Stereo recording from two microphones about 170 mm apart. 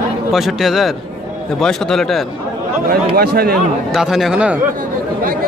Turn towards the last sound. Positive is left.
turn(degrees=-5)  # may be behind; listen again after turning